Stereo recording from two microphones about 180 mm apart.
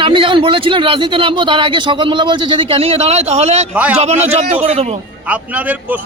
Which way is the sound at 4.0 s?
35° right (ahead or behind).